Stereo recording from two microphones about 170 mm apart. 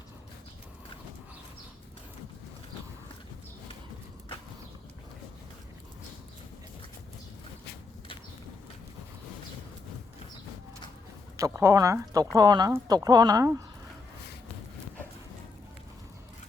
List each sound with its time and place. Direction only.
11.3 s speech: 15° right (ahead or behind)